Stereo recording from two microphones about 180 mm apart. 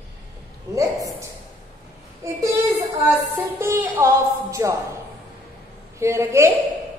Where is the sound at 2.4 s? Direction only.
15° right (ahead or behind).